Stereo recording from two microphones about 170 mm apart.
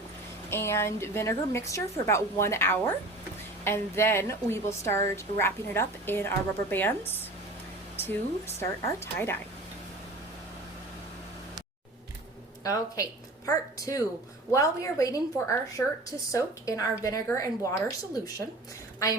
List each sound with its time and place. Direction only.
0.5 s a woman's voice: 15° left (ahead or behind)
12.6 s a woman's voice: 20° left (ahead or behind)